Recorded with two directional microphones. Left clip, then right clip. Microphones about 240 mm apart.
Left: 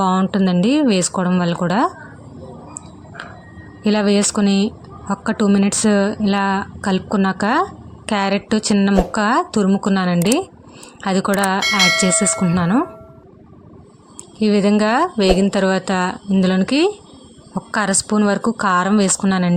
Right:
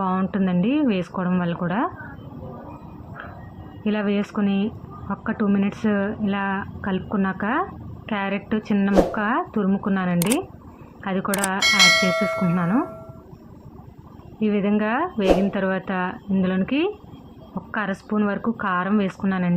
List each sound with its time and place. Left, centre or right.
0.0 s speech: left
3.8 s speech: left
11.6 s speech: centre
12.5 s speech: left
14.3 s speech: left